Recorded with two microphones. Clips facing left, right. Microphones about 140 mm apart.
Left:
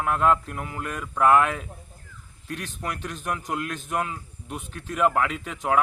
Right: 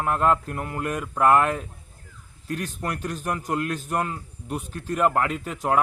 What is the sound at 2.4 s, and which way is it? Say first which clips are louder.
A man's voice: right 3 dB; 40° right (ahead or behind).